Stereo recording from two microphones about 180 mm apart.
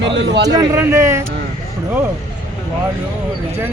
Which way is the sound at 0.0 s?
85° right.